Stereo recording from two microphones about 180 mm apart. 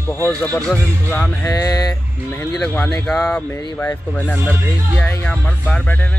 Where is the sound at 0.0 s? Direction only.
15° left (ahead or behind).